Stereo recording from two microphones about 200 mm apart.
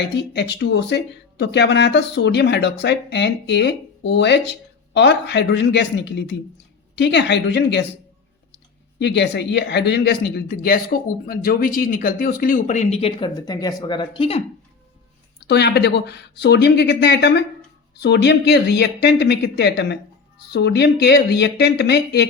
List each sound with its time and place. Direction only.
0.3 s speech: 55° left (ahead or behind); by 14.4 s 30° left (ahead or behind)
15.4 s speech: 55° left (ahead or behind)